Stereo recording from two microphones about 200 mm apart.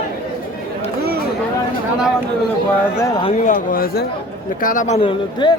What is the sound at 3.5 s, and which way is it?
Speech, 45° left (ahead or behind).